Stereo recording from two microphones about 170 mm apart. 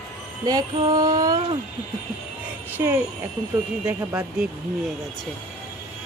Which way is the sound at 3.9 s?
10° right (ahead or behind).